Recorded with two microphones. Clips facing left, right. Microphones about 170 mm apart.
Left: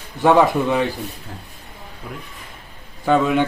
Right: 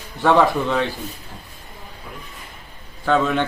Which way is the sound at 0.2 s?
15° left (ahead or behind).